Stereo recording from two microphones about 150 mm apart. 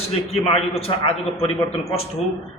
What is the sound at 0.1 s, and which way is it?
A man's voice, 40° left (ahead or behind).